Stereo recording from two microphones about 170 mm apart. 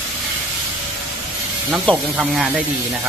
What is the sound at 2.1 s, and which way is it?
Speech, 5° right (ahead or behind).